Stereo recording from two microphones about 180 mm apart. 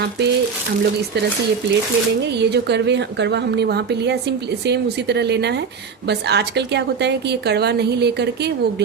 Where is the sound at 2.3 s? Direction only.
70° right (ahead or behind).